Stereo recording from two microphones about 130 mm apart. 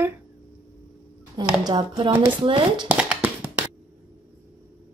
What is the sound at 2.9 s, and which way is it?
Hands, 10° right (ahead or behind).